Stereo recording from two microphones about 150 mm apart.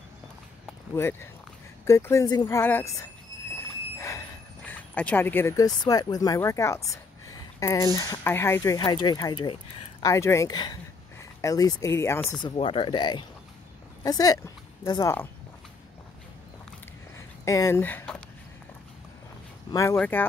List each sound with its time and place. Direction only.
0.9 s speech: 15° left (ahead or behind)
4.6 s speech: 10° left (ahead or behind); by 10.0 s 35° left (ahead or behind)
10.0 s speech: 20° left (ahead or behind)
12.5 s speech: 40° left (ahead or behind); by 15.2 s 20° left (ahead or behind)
17.5 s speech: 20° left (ahead or behind)
19.7 s speech: 20° left (ahead or behind)